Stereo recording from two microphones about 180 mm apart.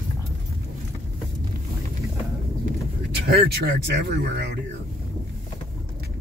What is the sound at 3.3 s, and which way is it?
Speech, 65° right (ahead or behind).